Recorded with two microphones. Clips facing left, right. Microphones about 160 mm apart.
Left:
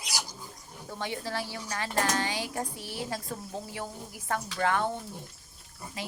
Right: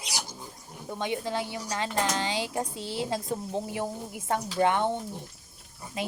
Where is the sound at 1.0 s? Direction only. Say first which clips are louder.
Right 4 dB; 20° right (ahead or behind).